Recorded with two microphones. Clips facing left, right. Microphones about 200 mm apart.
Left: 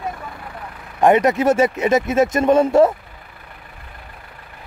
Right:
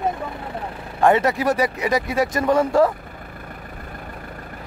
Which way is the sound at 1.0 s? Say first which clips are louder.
Left 3 dB; 20° left (ahead or behind).